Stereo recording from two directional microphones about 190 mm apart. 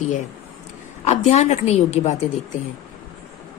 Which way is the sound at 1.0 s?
35° left (ahead or behind).